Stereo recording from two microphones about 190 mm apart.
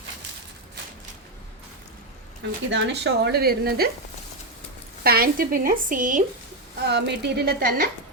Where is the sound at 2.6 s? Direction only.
65° right (ahead or behind).